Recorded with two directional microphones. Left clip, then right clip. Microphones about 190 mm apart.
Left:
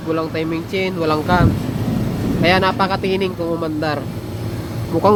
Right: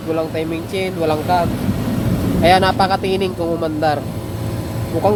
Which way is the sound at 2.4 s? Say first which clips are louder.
Right 3 dB; 15° left (ahead or behind).